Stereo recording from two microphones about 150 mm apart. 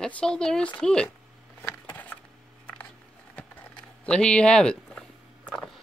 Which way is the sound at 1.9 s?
10° left (ahead or behind).